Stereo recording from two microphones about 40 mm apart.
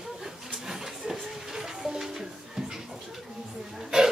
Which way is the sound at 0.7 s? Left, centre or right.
Centre.